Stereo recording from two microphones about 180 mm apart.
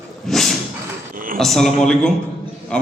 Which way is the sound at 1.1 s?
50° right (ahead or behind).